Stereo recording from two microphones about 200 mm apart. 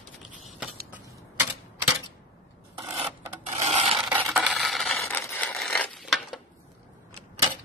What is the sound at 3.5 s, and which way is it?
Filing, 30° right (ahead or behind).